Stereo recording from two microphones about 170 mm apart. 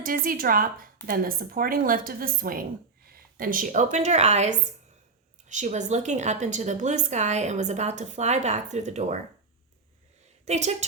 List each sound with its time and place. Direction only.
0.0 s speech: 55° right (ahead or behind)
3.1 s a sound: 55° right (ahead or behind)
3.9 s a woman's voice: 40° right (ahead or behind)
10.4 s a woman's voice: 40° right (ahead or behind)